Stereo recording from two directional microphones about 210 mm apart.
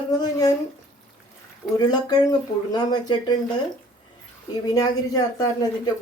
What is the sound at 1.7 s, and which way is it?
Speech, 20° left (ahead or behind).